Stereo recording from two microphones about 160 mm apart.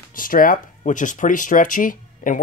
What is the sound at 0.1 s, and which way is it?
Speech, 60° left (ahead or behind).